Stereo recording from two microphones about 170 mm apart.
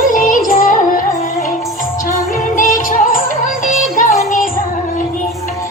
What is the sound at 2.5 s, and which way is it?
Music, 50° left (ahead or behind).